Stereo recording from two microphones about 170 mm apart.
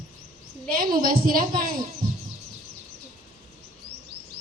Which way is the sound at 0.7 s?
55° right (ahead or behind).